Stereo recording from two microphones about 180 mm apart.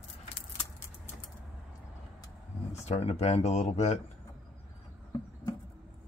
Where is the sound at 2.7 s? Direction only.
35° left (ahead or behind).